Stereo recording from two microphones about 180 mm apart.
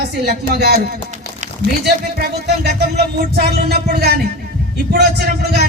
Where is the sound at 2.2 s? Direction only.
60° right (ahead or behind).